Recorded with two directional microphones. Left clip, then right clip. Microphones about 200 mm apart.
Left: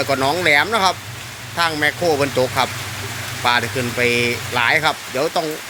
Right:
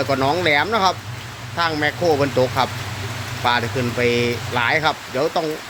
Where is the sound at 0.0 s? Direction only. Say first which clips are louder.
Left 1 dB; 5° right (ahead or behind).